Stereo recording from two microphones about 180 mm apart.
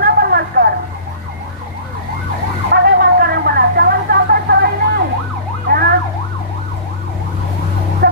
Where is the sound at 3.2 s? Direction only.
60° right (ahead or behind).